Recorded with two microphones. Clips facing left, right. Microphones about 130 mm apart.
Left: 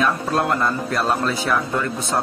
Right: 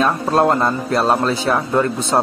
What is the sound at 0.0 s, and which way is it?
Speech, 30° right (ahead or behind).